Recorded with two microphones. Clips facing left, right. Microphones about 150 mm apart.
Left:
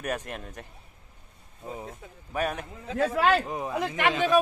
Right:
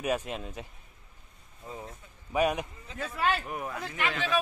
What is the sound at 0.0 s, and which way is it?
Speech, 10° right (ahead or behind).